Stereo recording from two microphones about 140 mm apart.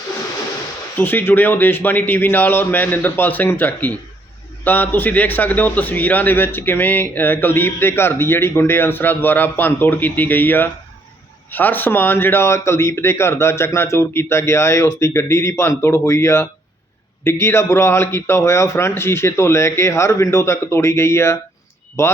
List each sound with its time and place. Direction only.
0.9 s a man's voice: 15° left (ahead or behind)